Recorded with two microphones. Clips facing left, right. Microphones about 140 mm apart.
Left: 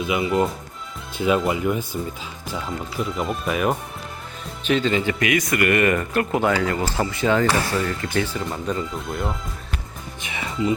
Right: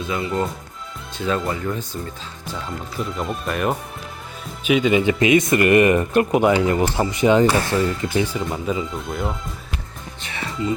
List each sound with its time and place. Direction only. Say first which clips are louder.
0.0 s speech: left 2 dB; 10° left (ahead or behind)
4.6 s speech: right 4 dB; 10° right (ahead or behind)
10.2 s music: left 1 dB; 15° left (ahead or behind)